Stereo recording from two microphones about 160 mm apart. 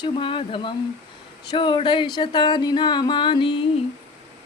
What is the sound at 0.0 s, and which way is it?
Speech, 30° left (ahead or behind).